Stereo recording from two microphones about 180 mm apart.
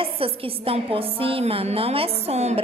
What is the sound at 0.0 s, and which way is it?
A woman's voice, 30° right (ahead or behind).